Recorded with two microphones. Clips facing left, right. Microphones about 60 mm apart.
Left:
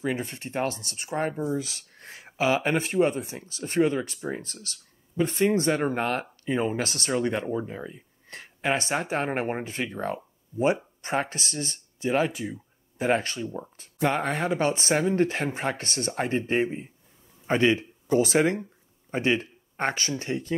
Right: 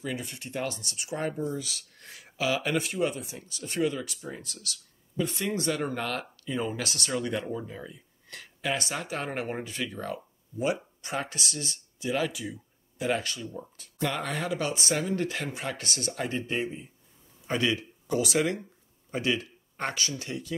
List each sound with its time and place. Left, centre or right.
0.0 s speech: left